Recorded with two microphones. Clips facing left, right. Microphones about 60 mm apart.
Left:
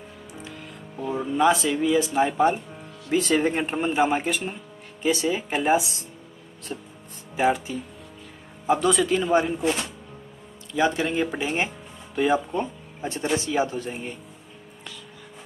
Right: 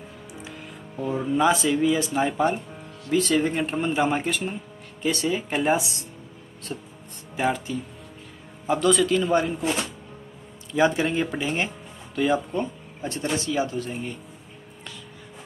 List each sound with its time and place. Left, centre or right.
0.3 s speech: centre
3.1 s speech: left
10.8 s speech: centre
11.1 s speech: centre; by 13.9 s left